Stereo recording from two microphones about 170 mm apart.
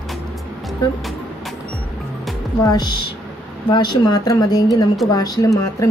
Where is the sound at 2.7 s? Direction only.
25° left (ahead or behind).